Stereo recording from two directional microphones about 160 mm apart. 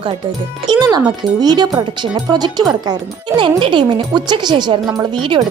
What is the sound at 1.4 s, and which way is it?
A woman's voice, 25° right (ahead or behind).